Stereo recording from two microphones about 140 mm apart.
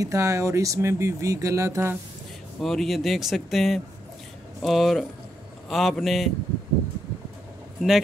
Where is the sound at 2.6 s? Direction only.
Centre (ahead or behind).